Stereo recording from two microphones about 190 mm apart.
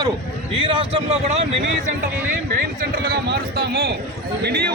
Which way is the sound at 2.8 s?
55° right (ahead or behind).